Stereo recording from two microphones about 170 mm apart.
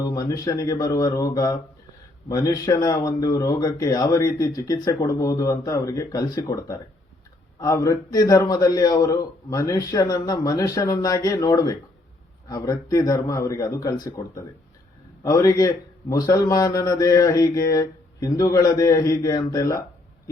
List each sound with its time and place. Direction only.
0.0 s a man's voice: 20° left (ahead or behind)